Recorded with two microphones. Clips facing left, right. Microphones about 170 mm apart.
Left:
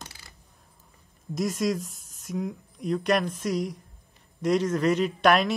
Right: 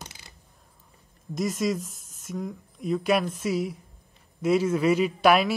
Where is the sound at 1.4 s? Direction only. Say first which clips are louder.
Even; centre (ahead or behind).